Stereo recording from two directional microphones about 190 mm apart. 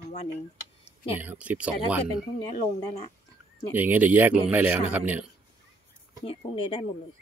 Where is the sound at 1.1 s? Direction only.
10° right (ahead or behind).